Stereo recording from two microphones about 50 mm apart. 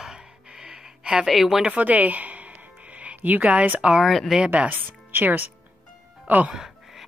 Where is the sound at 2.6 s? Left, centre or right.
Right.